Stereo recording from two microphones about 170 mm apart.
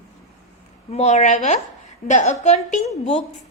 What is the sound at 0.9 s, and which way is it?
A woman's voice, 40° left (ahead or behind).